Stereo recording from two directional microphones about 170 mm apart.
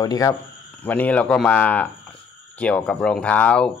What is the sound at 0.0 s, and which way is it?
Speech, 20° left (ahead or behind).